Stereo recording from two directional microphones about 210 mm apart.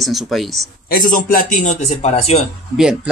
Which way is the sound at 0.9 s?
40° left (ahead or behind).